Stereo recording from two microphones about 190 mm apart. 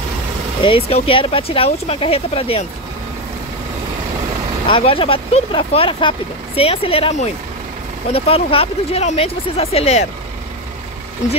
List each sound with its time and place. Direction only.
0.7 s speech: 30° left (ahead or behind)
4.6 s speech: 25° left (ahead or behind)